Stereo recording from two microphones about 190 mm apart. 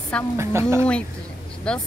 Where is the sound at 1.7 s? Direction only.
5° left (ahead or behind).